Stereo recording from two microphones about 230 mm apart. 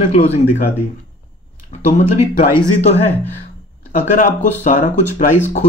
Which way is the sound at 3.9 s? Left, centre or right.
Left.